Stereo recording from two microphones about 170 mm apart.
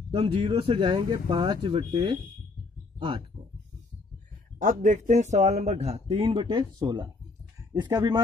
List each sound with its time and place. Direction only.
0.1 s speech: 30° right (ahead or behind)
4.6 s speech: 50° right (ahead or behind); by 8.2 s 25° right (ahead or behind)